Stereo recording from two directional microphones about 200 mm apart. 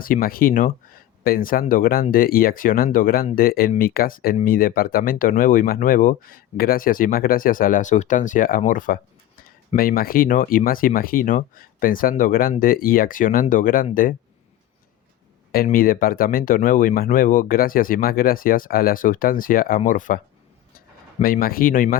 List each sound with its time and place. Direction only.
0.0 s speech: 45° left (ahead or behind)
15.5 s speech: 45° left (ahead or behind)